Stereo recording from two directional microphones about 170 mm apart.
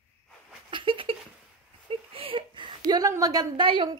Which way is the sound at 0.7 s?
30° right (ahead or behind).